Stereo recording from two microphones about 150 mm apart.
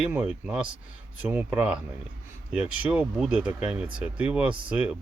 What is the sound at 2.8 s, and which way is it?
Speech, 10° right (ahead or behind).